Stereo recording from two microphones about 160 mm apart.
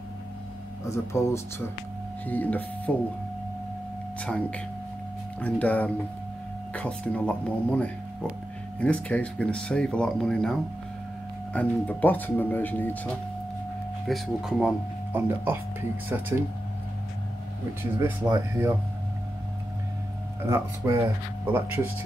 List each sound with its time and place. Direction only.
0.8 s speech: 15° left (ahead or behind)
4.2 s speech: 10° left (ahead or behind)
14.0 s speech: centre (ahead or behind)
15.1 s speech: 15° right (ahead or behind)
17.9 s speech: 15° right (ahead or behind)
20.4 s speech: 20° right (ahead or behind)